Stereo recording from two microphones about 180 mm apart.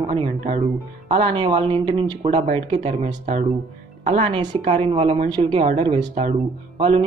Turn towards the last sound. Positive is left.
turn(degrees=-30)  # may be behind; listen again after turning